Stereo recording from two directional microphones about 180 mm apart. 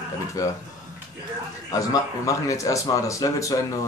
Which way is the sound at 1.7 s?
20° left (ahead or behind).